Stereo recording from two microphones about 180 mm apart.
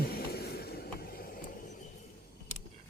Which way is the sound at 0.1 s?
60° left (ahead or behind).